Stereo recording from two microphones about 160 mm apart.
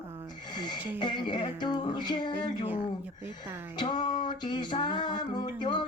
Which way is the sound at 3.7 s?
30° left (ahead or behind).